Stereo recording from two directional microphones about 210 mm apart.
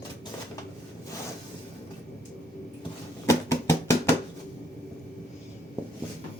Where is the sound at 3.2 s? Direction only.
15° left (ahead or behind).